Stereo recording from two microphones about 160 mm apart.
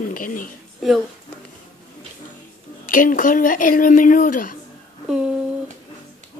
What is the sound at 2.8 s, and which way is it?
Speech, 55° left (ahead or behind).